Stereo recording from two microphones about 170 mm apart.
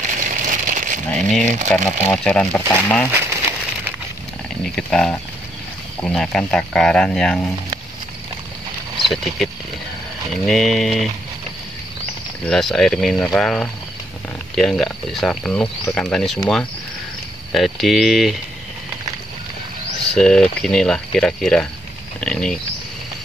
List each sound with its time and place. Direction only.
0.0 s a sound: 50° right (ahead or behind)
1.7 s speech: 5° left (ahead or behind)
3.1 s crumpling: 15° right (ahead or behind)
4.7 s speech: 5° left (ahead or behind)
9.0 s speech: centre (ahead or behind)
12.4 s speech: centre (ahead or behind)
17.6 s speech: centre (ahead or behind)
20.0 s speech: 5° left (ahead or behind)